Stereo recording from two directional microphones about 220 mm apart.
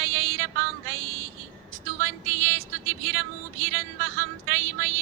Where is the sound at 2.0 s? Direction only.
65° right (ahead or behind).